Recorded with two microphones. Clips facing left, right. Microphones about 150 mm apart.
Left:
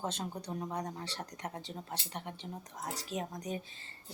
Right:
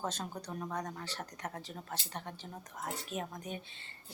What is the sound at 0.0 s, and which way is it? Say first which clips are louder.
Speech: left 1 dB; 30° left (ahead or behind).